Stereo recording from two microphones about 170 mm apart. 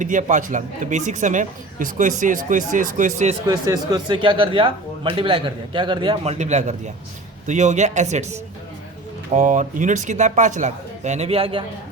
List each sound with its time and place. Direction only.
0.0 s speech: 50° right (ahead or behind)
3.4 s speech: 20° right (ahead or behind)